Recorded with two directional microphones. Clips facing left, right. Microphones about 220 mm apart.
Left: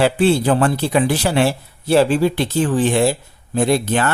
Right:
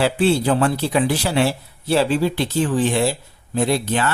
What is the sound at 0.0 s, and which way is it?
Speech, 50° left (ahead or behind).